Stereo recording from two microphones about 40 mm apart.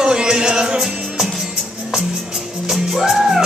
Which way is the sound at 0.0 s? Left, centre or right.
Centre.